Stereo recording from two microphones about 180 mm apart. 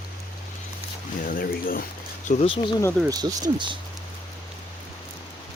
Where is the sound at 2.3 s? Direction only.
40° left (ahead or behind).